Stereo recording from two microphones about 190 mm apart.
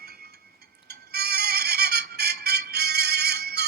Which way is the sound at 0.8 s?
55° right (ahead or behind).